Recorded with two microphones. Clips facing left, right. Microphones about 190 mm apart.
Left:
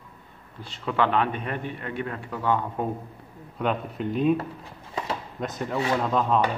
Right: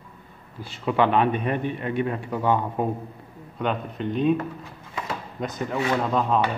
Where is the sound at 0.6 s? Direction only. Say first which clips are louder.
Right 3 dB; 10° right (ahead or behind).